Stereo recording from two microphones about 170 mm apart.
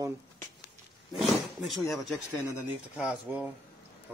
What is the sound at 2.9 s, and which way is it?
Speech, 5° right (ahead or behind).